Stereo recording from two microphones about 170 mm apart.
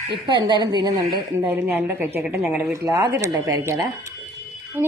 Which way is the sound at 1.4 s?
10° right (ahead or behind).